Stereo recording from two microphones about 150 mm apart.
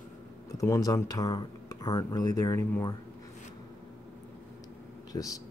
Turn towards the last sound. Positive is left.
turn(degrees=20)  # may be behind; listen again after turning